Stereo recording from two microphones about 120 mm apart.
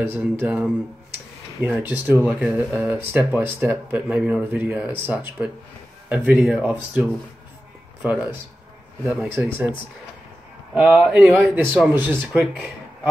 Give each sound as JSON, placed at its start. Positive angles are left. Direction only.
{"t": 0.0, "sound": "a man's voice", "side_deg": -20}
{"t": 10.7, "sound": "speech", "side_deg": -5}
{"t": 11.3, "sound": "speech", "side_deg": -15}